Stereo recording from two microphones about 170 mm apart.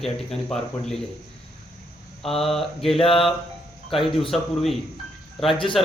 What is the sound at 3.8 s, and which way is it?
Speech, centre (ahead or behind).